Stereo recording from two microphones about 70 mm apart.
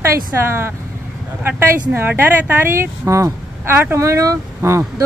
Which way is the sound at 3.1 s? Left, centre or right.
Right.